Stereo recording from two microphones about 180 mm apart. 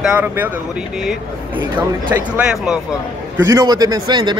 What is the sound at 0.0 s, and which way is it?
Speech, 10° right (ahead or behind).